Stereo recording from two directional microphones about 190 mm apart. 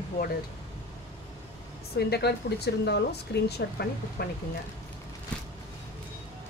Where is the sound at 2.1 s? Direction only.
60° left (ahead or behind).